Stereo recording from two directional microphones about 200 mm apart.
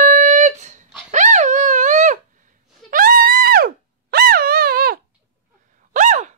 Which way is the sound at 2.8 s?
45° right (ahead or behind).